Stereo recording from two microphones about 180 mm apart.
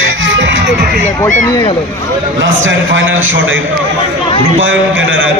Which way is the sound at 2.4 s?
90° right.